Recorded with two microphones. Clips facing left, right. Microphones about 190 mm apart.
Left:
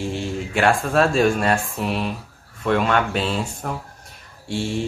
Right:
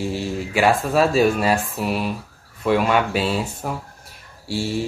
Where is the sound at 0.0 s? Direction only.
5° right (ahead or behind).